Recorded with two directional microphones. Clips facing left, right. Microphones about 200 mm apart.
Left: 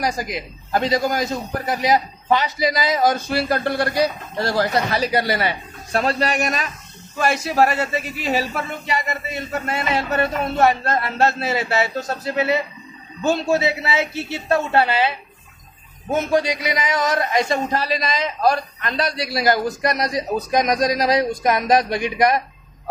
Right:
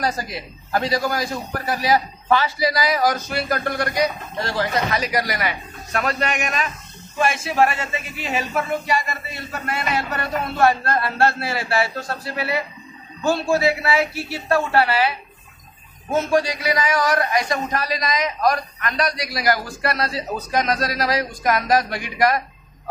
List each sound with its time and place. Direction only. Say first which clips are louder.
0.0 s a man's voice: left 1 dB; 15° left (ahead or behind); by 8.5 s 35° left (ahead or behind)
8.8 s a man's voice: right 1 dB; 20° left (ahead or behind)